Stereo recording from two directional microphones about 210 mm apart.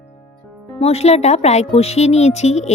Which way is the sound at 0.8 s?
30° left (ahead or behind).